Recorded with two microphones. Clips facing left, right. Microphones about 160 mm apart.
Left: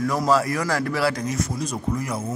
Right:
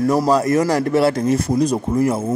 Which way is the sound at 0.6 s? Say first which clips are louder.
Right 8 dB; 20° right (ahead or behind).